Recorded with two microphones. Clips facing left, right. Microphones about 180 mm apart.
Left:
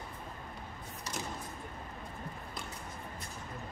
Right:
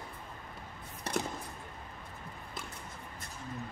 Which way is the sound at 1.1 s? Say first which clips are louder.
Right 8 dB; 55° right (ahead or behind).